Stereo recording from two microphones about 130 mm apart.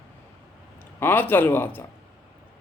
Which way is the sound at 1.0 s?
15° left (ahead or behind).